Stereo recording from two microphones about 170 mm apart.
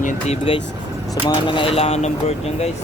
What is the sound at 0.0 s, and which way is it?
Speech, 35° left (ahead or behind).